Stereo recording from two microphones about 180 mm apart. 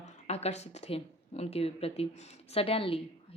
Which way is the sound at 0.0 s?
35° left (ahead or behind).